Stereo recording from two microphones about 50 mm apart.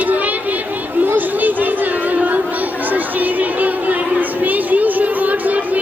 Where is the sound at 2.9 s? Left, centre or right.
Right.